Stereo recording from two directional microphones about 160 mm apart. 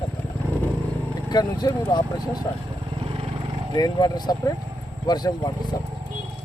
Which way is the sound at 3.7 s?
25° left (ahead or behind).